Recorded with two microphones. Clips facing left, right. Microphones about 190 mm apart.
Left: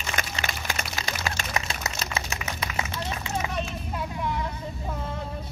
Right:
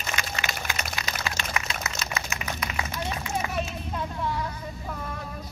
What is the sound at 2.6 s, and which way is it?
Run, 30° left (ahead or behind).